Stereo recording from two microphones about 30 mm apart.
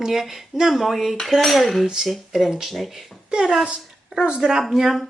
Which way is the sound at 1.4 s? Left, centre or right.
Centre.